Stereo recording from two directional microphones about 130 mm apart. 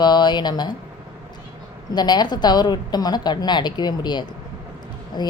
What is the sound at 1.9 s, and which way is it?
A woman's voice, 35° left (ahead or behind).